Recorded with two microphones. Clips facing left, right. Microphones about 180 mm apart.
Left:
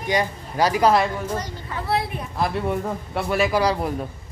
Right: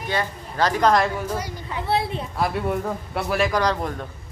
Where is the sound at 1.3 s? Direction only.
10° right (ahead or behind).